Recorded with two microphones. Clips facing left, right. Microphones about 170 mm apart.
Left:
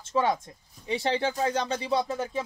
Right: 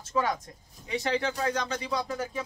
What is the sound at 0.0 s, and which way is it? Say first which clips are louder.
Speech: left 3 dB; 25° left (ahead or behind).